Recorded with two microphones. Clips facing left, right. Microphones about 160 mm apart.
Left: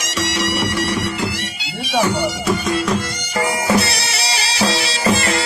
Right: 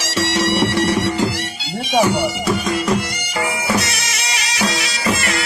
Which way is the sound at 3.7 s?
30° left (ahead or behind).